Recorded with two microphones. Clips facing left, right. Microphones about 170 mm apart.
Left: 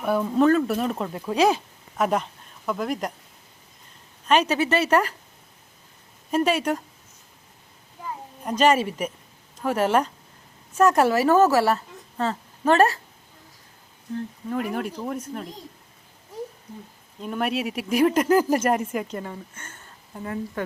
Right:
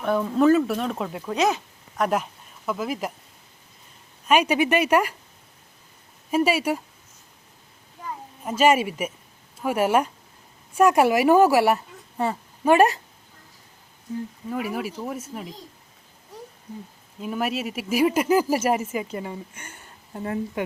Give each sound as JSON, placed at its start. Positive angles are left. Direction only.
{"t": 0.0, "sound": "speech", "side_deg": 10}
{"t": 1.4, "sound": "speech", "side_deg": 30}
{"t": 2.0, "sound": "speech", "side_deg": 0}
{"t": 4.3, "sound": "speech", "side_deg": -10}
{"t": 6.3, "sound": "speech", "side_deg": -5}
{"t": 8.4, "sound": "speech", "side_deg": -10}
{"t": 14.5, "sound": "speech", "side_deg": -5}
{"t": 17.2, "sound": "speech", "side_deg": -5}
{"t": 20.2, "sound": "speech", "side_deg": -25}